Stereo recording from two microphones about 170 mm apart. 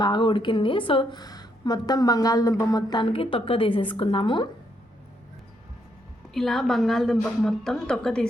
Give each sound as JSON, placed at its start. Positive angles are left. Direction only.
{"t": 0.0, "sound": "speech", "side_deg": 30}
{"t": 6.3, "sound": "speech", "side_deg": 0}